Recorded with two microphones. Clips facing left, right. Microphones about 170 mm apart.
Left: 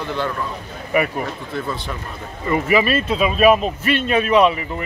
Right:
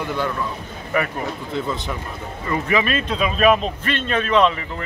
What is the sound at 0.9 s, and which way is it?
Speech, 15° left (ahead or behind).